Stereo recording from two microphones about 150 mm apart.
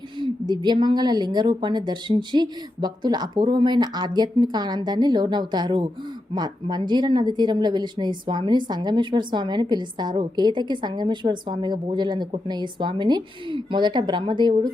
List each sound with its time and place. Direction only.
0.2 s speech: 30° right (ahead or behind)